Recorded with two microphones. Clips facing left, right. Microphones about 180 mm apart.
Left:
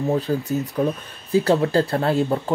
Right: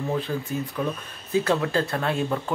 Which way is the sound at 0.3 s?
40° left (ahead or behind).